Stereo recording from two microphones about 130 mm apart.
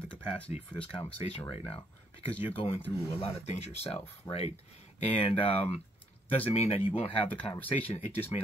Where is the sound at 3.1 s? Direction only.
55° left (ahead or behind).